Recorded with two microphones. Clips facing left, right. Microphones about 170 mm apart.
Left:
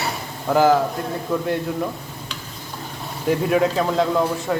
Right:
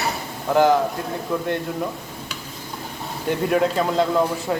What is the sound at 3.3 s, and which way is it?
A man's voice, centre (ahead or behind).